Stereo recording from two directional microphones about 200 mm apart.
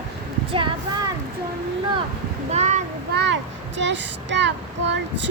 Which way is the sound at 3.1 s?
60° right (ahead or behind).